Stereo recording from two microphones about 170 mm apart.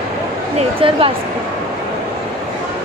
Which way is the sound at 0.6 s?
35° right (ahead or behind).